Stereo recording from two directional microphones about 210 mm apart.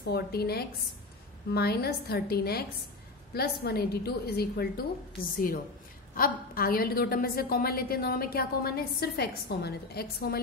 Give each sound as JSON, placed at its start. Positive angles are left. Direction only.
{"t": 0.0, "sound": "a woman's voice", "side_deg": 50}
{"t": 6.1, "sound": "a woman's voice", "side_deg": 45}